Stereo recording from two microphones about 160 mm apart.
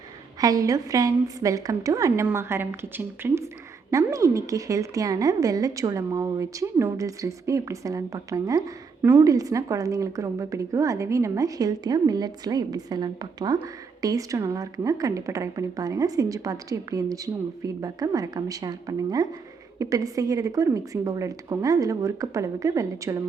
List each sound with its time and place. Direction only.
0.3 s speech: 20° right (ahead or behind)